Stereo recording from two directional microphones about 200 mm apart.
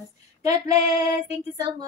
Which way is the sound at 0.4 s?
15° right (ahead or behind).